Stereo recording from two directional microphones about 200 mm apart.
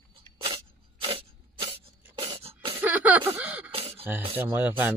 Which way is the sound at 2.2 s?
30° right (ahead or behind).